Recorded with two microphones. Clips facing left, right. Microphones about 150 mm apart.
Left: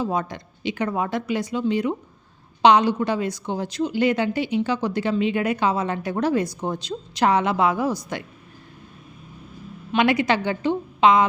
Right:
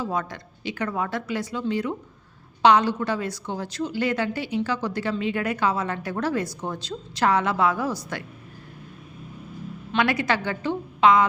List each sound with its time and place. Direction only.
0.0 s a woman's voice: 20° left (ahead or behind)
9.9 s a woman's voice: 20° left (ahead or behind)